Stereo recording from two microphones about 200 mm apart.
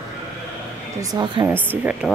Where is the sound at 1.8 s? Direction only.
5° right (ahead or behind).